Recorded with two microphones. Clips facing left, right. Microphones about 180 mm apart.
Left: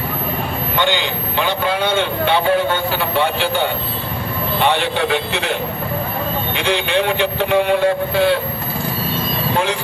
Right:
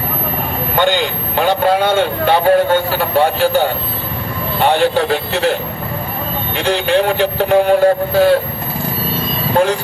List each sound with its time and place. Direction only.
0.8 s speech: 45° right (ahead or behind)
6.6 s speech: 40° right (ahead or behind)
9.6 s speech: 40° right (ahead or behind)